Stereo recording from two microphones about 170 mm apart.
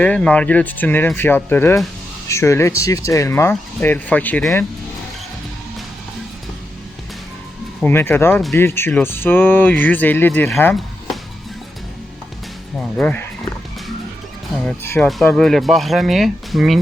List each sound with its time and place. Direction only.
0.0 s speech: 5° left (ahead or behind)
7.9 s speech: 10° left (ahead or behind)
13.0 s speech: 5° left (ahead or behind)
15.0 s speech: 5° left (ahead or behind)